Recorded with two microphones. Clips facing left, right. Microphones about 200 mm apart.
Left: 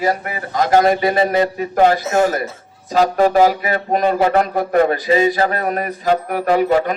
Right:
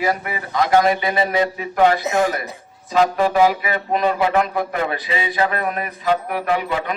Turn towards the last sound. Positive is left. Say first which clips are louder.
# left 7 dB
turn(degrees=45)  # may be behind; listen again after turning